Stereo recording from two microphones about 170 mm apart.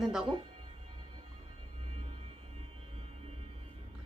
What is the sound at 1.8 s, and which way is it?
Music, 35° right (ahead or behind).